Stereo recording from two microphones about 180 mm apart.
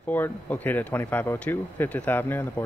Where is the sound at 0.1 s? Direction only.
10° left (ahead or behind).